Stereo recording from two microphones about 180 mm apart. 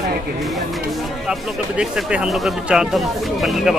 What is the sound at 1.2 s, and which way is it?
Speech, 5° right (ahead or behind).